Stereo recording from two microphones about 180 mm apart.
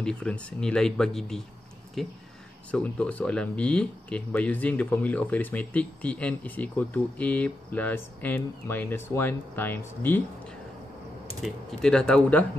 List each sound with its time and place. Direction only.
0.0 s speech: 5° left (ahead or behind)
11.4 s speech: 5° left (ahead or behind)